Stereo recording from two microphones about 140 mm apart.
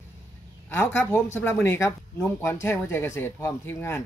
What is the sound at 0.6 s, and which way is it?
Speech, 15° left (ahead or behind).